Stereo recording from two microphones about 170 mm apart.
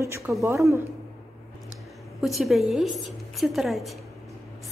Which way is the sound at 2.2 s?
Centre (ahead or behind).